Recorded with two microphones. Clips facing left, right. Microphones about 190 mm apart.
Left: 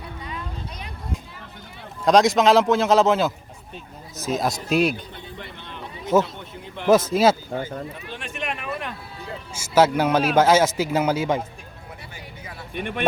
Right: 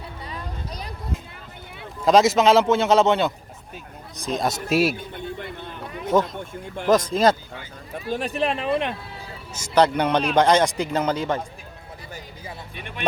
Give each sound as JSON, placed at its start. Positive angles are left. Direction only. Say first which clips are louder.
{"t": 0.3, "sound": "vehicle", "louder": "right 1 dB", "side_deg": -35}
{"t": 2.0, "sound": "speech", "louder": "even", "side_deg": 0}
{"t": 5.4, "sound": "a sound", "louder": "right 3 dB", "side_deg": -55}
{"t": 6.4, "sound": "speech", "louder": "right 4 dB", "side_deg": -50}
{"t": 6.8, "sound": "speech", "louder": "left 1 dB", "side_deg": 5}
{"t": 7.9, "sound": "speech", "louder": "right 9 dB", "side_deg": -35}
{"t": 9.6, "sound": "speech", "louder": "left 1 dB", "side_deg": 5}
{"t": 12.7, "sound": "speech", "louder": "left 9 dB", "side_deg": 55}